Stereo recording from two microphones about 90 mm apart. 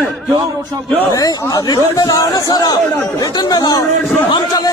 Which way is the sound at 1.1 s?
45° left (ahead or behind).